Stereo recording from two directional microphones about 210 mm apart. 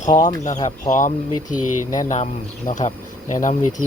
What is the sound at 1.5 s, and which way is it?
Speech, 90° left.